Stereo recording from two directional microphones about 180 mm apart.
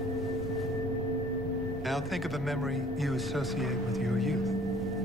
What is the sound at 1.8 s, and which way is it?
Speech, centre (ahead or behind).